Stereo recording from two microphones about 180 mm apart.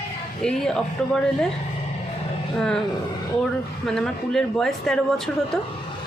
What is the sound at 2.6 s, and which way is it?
Speech, 5° left (ahead or behind).